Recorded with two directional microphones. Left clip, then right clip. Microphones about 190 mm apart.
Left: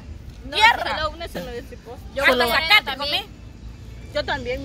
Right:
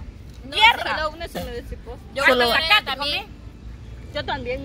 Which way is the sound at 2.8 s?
35° right (ahead or behind).